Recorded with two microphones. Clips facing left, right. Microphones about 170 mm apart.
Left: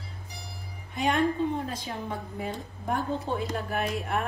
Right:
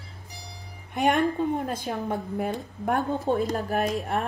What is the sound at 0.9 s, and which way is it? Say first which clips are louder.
Speech: right 3 dB; 60° right (ahead or behind).